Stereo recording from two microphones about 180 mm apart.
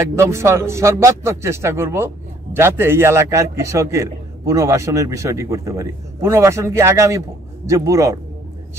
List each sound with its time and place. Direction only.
0.1 s speech: 15° right (ahead or behind)